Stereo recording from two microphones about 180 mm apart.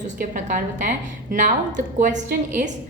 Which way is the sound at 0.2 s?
45° right (ahead or behind).